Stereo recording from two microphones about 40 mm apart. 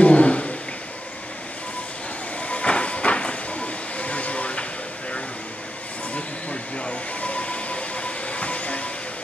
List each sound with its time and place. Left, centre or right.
0.0 s a sound: left
2.4 s train: left
6.1 s train: left